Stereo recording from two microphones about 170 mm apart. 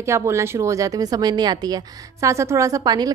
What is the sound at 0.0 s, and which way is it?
Speech, 15° right (ahead or behind).